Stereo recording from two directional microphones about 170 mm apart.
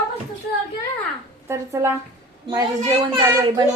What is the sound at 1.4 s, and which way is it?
Speech, 15° right (ahead or behind).